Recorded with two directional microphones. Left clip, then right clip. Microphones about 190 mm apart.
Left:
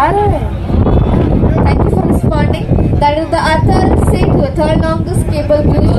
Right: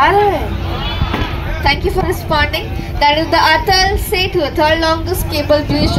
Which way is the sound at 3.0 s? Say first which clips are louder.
Right 2 dB; 55° left (ahead or behind).